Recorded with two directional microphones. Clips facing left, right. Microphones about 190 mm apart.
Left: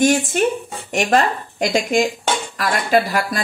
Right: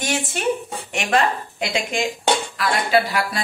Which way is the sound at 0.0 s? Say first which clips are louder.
Left 7 dB; 50° left (ahead or behind).